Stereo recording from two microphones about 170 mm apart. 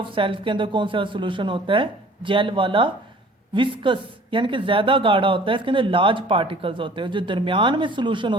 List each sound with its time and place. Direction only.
0.0 s speech: 30° right (ahead or behind)